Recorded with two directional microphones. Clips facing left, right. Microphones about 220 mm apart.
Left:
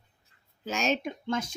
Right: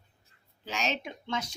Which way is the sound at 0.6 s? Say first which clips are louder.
Left 5 dB; 45° left (ahead or behind).